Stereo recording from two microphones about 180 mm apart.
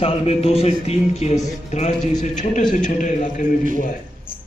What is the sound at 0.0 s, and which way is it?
A man's voice, 35° left (ahead or behind).